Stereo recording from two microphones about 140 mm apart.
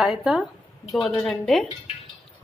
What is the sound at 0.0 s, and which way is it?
A woman's voice, 5° right (ahead or behind).